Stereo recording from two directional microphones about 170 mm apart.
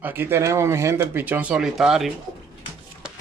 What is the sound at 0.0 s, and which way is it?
Speech, 10° right (ahead or behind).